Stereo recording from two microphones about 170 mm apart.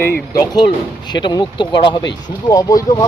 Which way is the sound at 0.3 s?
25° left (ahead or behind).